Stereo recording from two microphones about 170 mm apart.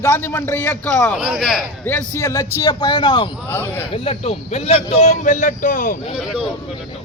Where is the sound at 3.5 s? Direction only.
15° left (ahead or behind).